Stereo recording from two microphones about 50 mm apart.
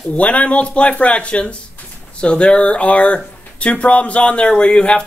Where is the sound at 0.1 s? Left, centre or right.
Left.